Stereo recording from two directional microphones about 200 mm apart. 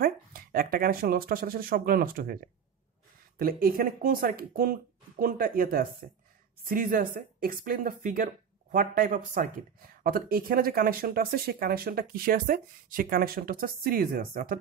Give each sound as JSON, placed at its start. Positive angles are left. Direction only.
{"t": 0.0, "sound": "speech", "side_deg": -50}
{"t": 3.3, "sound": "speech", "side_deg": -45}